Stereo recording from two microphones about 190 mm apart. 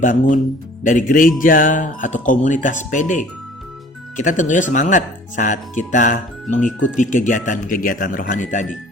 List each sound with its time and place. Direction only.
0.0 s speech: 45° left (ahead or behind)